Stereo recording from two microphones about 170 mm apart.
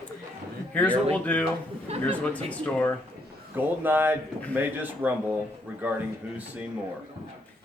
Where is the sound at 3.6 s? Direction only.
10° right (ahead or behind).